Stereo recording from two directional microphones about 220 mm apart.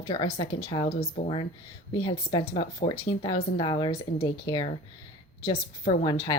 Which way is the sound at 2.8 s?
25° left (ahead or behind).